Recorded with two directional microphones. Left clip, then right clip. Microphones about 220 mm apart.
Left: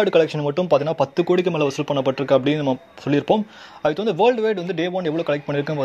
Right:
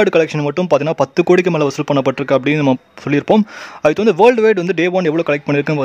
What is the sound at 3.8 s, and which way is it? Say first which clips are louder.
Speech: right 8 dB; 60° right (ahead or behind).